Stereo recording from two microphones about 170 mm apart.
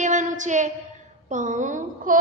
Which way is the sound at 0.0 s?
45° right (ahead or behind).